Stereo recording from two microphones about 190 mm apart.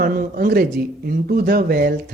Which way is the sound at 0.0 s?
50° right (ahead or behind).